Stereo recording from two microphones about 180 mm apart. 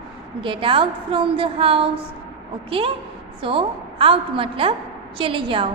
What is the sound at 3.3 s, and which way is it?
A woman's voice, 30° right (ahead or behind).